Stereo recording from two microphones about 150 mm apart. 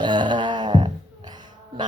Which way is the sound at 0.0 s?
30° right (ahead or behind).